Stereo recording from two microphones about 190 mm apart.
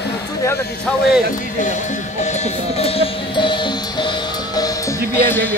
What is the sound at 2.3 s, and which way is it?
Cowbell, 30° left (ahead or behind).